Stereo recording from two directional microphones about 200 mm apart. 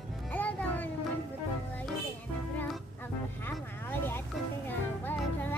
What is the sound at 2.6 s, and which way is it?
Music, 10° left (ahead or behind).